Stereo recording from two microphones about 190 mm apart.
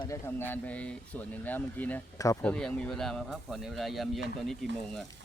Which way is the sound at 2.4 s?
5° left (ahead or behind).